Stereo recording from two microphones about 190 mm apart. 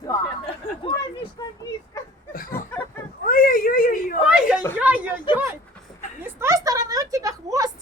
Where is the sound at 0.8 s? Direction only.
30° left (ahead or behind).